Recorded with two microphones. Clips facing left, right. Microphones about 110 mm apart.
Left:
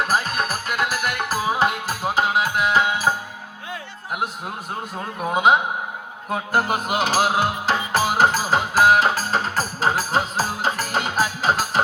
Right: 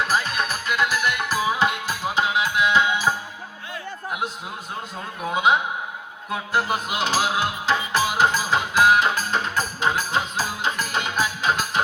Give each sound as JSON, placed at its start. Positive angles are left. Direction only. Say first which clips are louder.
{"t": 0.0, "sound": "music", "louder": "left 1 dB", "side_deg": 45}
{"t": 5.3, "sound": "a man's voice", "louder": "left 3 dB", "side_deg": 45}
{"t": 6.3, "sound": "music", "louder": "left 2 dB", "side_deg": 45}